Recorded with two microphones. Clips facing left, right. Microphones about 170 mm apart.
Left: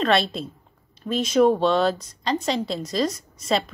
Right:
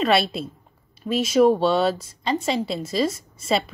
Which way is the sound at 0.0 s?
5° right (ahead or behind).